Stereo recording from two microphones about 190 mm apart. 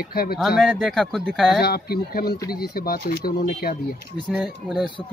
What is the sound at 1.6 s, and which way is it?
Speech, 55° left (ahead or behind).